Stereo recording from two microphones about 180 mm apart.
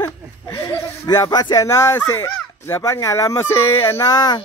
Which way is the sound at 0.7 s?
20° left (ahead or behind).